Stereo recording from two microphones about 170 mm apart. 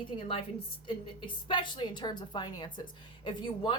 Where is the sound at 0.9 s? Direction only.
30° left (ahead or behind).